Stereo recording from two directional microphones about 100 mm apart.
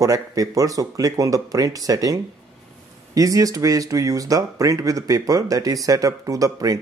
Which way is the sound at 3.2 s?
35° right (ahead or behind).